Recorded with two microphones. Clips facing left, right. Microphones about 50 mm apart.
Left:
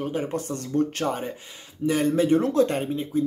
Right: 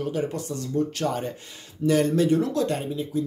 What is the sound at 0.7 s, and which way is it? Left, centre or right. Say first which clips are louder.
Speech: left 2 dB; left.